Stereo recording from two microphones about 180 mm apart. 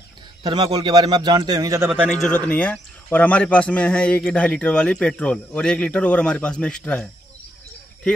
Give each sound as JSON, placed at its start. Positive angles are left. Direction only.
{"t": 0.4, "sound": "speech", "side_deg": -25}
{"t": 2.0, "sound": "speech", "side_deg": 5}